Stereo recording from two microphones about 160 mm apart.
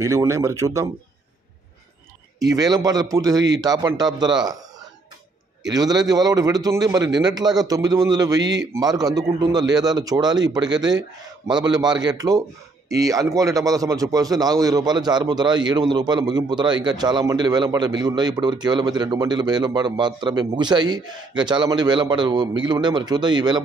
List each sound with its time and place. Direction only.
0.0 s speech: 20° right (ahead or behind)
2.4 s speech: 25° right (ahead or behind)
5.7 s speech: 25° right (ahead or behind)